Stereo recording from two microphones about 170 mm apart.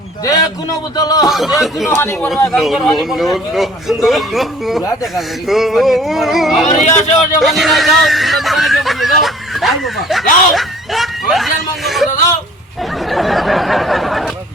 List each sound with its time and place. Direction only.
0.3 s speech: 20° left (ahead or behind)
1.3 s a man's voice: centre (ahead or behind)
1.9 s speech: 15° left (ahead or behind)
2.5 s a man's voice: centre (ahead or behind)
6.7 s speech: 40° left (ahead or behind)
7.3 s speech: centre (ahead or behind)
13.1 s a man's voice: centre (ahead or behind)